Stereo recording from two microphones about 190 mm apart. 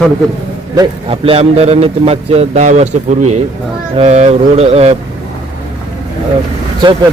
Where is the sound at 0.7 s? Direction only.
30° right (ahead or behind).